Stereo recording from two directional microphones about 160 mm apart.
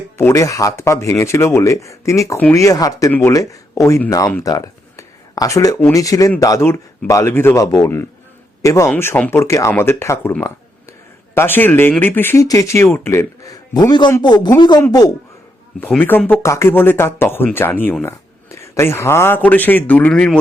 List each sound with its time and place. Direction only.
0.2 s speech: 15° left (ahead or behind)
15.8 s speech: 10° left (ahead or behind)